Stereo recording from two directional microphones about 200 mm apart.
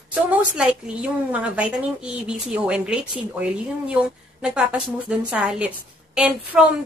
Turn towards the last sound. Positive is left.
turn(degrees=-5)  # may be behind; listen again after turning